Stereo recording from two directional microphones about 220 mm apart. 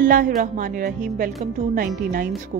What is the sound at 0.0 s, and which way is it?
Speech, 40° right (ahead or behind).